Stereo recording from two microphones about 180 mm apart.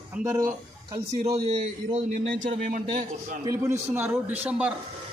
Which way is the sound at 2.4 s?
50° right (ahead or behind).